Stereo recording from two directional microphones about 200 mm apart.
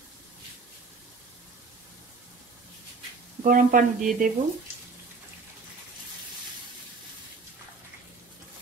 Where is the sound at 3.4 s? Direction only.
40° right (ahead or behind).